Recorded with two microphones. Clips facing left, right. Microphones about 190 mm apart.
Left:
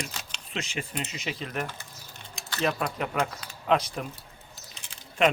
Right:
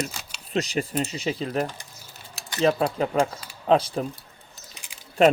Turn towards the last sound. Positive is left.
turn(degrees=-35)  # may be behind; listen again after turning